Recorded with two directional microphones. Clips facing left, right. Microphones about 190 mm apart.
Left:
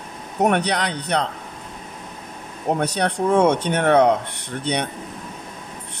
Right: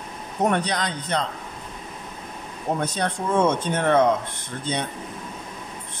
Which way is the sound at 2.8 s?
70° left (ahead or behind).